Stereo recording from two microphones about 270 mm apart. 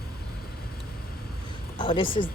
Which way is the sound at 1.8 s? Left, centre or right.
Centre.